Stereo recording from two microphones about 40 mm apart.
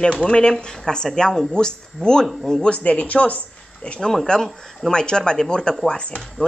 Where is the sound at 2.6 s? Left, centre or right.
Left.